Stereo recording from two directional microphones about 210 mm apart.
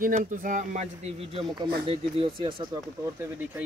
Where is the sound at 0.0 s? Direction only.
40° right (ahead or behind).